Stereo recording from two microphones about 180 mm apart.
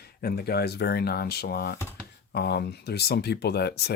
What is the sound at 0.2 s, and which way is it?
Speech, 60° left (ahead or behind).